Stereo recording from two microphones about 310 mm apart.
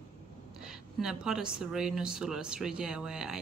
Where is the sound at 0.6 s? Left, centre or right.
Centre.